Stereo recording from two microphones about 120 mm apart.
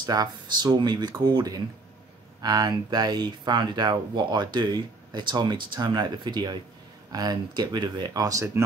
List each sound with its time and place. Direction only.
0.0 s speech: 35° right (ahead or behind)